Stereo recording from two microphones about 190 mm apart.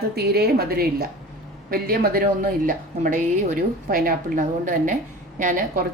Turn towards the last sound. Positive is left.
turn(degrees=-45)  # may be behind; listen again after turning